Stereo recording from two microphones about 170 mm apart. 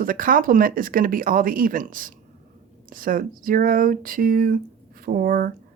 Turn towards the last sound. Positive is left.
turn(degrees=-55)  # may be behind; listen again after turning